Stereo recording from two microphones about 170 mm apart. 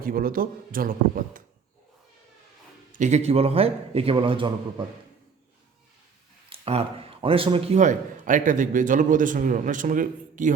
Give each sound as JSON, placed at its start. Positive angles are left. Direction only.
{"t": 0.0, "sound": "a man's voice", "side_deg": -55}
{"t": 2.9, "sound": "a man's voice", "side_deg": -45}
{"t": 6.5, "sound": "a man's voice", "side_deg": -35}